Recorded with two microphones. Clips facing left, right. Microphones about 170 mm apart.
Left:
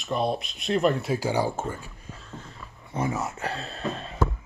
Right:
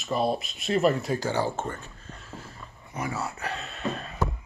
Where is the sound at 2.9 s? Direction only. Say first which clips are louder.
Left 4 dB; 25° left (ahead or behind).